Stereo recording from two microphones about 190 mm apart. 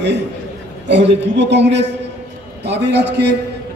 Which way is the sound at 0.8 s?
65° right (ahead or behind).